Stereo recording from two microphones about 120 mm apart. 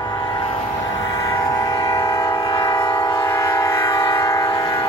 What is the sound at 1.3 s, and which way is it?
Train, 30° left (ahead or behind).